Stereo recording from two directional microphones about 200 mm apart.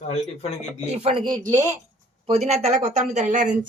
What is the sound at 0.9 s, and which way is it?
Speech, 30° right (ahead or behind).